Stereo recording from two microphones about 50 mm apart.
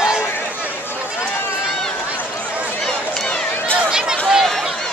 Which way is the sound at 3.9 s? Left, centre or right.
Centre.